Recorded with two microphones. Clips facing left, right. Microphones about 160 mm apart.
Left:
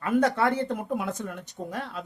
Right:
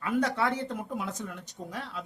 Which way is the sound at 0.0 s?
50° left (ahead or behind).